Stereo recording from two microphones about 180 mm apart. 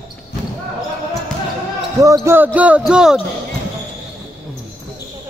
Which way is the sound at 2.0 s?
15° right (ahead or behind).